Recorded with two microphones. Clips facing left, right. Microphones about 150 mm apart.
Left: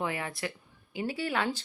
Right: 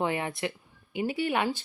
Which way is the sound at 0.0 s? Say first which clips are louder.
Right 4 dB; 25° right (ahead or behind).